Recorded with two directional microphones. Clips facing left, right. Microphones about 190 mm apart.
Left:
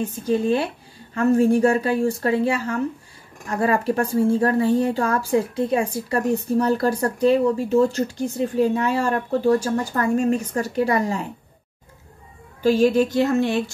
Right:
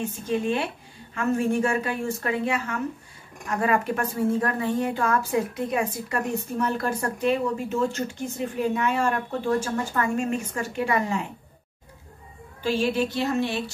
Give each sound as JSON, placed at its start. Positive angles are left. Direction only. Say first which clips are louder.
{"t": 0.0, "sound": "a woman's voice", "louder": "left 5 dB", "side_deg": 35}
{"t": 12.6, "sound": "speech", "louder": "left 7 dB", "side_deg": 45}